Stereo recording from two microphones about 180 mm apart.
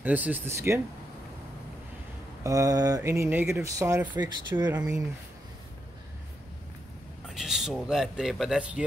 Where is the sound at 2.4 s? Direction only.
20° right (ahead or behind).